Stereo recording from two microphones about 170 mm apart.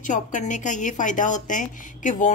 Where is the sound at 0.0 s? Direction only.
45° left (ahead or behind).